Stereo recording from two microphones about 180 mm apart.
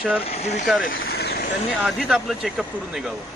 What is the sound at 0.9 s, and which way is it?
Vehicle, 60° left (ahead or behind).